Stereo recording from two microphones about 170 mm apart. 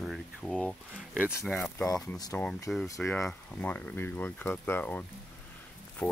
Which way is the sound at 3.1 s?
10° left (ahead or behind).